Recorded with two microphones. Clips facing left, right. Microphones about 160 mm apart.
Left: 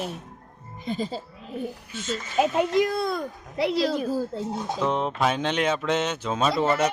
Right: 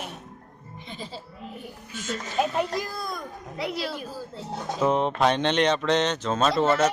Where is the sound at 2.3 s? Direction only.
20° left (ahead or behind).